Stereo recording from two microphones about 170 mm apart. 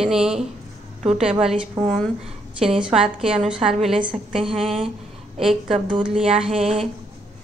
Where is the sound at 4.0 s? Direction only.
30° right (ahead or behind).